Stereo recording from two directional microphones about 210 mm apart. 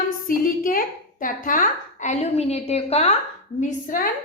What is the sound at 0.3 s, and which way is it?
A woman's voice, 40° left (ahead or behind).